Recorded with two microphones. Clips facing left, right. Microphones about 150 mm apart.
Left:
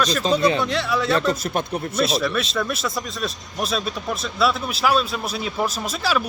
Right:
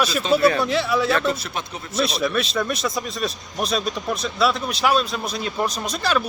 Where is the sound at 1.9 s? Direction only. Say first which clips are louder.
Even; centre (ahead or behind).